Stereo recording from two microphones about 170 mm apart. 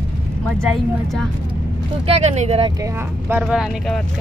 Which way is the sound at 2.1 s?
40° right (ahead or behind).